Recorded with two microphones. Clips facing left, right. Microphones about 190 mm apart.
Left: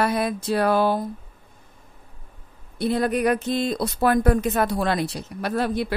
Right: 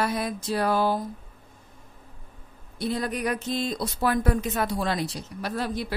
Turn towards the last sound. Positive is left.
turn(degrees=60)  # may be behind; listen again after turning